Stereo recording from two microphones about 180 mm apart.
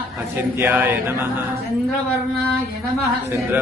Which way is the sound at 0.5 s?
10° right (ahead or behind).